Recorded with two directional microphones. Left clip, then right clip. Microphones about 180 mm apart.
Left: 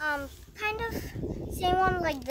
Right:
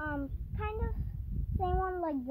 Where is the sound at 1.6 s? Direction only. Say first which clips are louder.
Left 8 dB; 30° left (ahead or behind).